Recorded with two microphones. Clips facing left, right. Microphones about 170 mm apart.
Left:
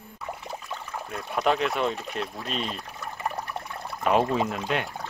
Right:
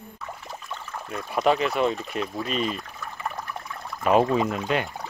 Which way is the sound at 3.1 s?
35° left (ahead or behind).